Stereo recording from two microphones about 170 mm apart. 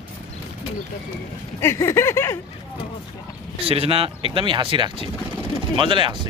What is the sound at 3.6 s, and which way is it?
Speech, 35° right (ahead or behind).